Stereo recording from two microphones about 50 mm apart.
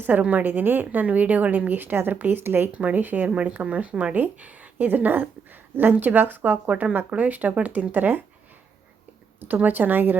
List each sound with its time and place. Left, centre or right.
0.2 s a woman's voice: right
0.4 s a woman's voice: right
2.7 s a woman's voice: right
3.2 s a woman's voice: right
9.4 s a woman's voice: right